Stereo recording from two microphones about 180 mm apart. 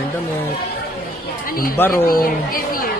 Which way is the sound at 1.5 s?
55° left (ahead or behind).